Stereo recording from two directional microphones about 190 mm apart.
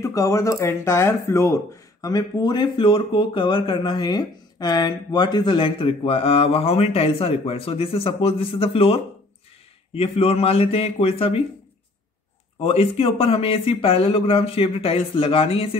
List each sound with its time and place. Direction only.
0.0 s a man's voice: 15° left (ahead or behind)
12.6 s speech: 30° left (ahead or behind)